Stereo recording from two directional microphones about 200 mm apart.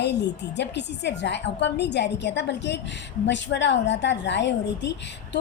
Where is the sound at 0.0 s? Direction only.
60° left (ahead or behind).